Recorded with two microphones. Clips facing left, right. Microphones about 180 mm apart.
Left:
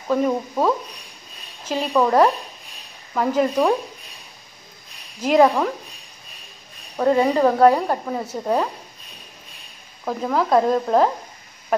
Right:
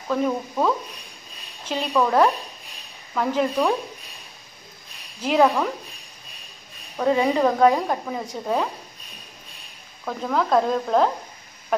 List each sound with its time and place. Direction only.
0.1 s a woman's voice: 10° left (ahead or behind)
5.2 s a woman's voice: 10° left (ahead or behind)
7.0 s speech: 5° left (ahead or behind)
10.0 s speech: 5° left (ahead or behind)